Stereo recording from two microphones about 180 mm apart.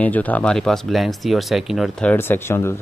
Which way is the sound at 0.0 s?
10° left (ahead or behind).